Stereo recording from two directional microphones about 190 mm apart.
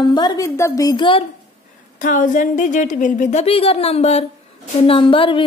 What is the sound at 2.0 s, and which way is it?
A woman's voice, 40° left (ahead or behind).